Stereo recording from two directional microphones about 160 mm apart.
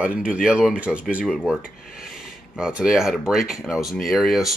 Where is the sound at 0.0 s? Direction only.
5° right (ahead or behind).